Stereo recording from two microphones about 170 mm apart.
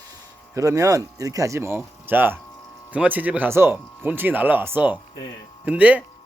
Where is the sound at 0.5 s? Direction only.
20° right (ahead or behind).